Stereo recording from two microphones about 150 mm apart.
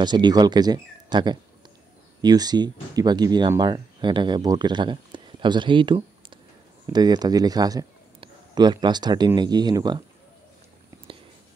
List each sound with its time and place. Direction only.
0.0 s speech: 30° right (ahead or behind)